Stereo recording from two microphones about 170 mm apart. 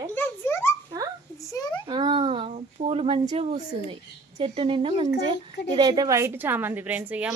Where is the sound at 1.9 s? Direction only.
30° right (ahead or behind).